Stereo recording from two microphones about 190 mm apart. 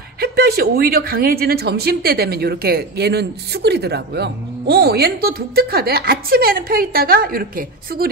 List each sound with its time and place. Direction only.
0.2 s speech: 55° right (ahead or behind)